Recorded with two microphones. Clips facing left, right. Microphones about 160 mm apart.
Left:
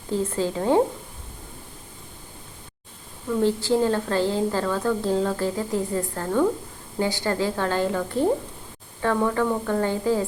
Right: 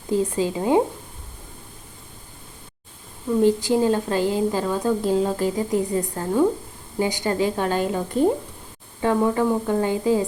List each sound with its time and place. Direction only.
0.1 s a woman's voice: 15° right (ahead or behind)
3.2 s a woman's voice: 15° right (ahead or behind)